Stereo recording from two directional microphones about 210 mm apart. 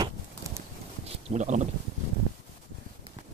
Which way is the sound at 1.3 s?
35° right (ahead or behind).